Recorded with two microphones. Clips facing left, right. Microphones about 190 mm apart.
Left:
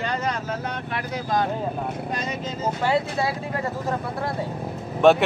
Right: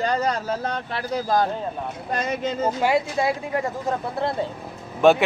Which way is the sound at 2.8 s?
10° right (ahead or behind).